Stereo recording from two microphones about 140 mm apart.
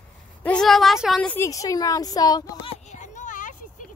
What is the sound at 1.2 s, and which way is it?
A woman's voice, 20° left (ahead or behind).